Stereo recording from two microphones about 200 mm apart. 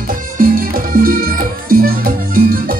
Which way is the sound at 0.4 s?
45° right (ahead or behind).